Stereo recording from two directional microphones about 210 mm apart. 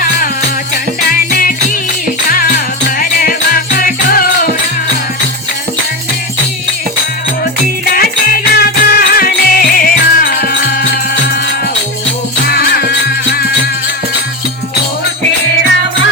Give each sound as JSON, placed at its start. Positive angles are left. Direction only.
{"t": 1.1, "sound": "music", "side_deg": 40}
{"t": 3.0, "sound": "music", "side_deg": 45}
{"t": 7.9, "sound": "music", "side_deg": 45}
{"t": 12.5, "sound": "music", "side_deg": 50}